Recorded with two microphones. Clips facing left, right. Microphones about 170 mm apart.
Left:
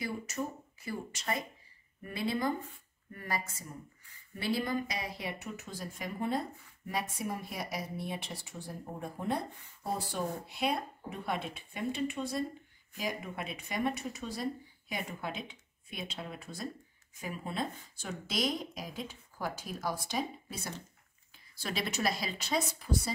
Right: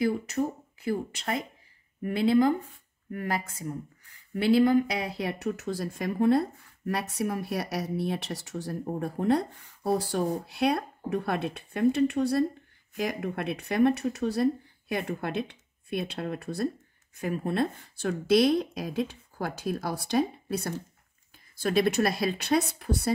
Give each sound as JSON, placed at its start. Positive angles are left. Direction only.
{"t": 0.8, "sound": "speech", "side_deg": -60}
{"t": 3.1, "sound": "speech", "side_deg": -70}
{"t": 4.6, "sound": "speech", "side_deg": -65}